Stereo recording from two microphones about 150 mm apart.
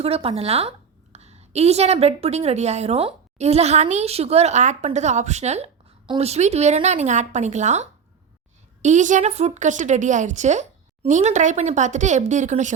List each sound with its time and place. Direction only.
0.0 s a woman's voice: 40° right (ahead or behind)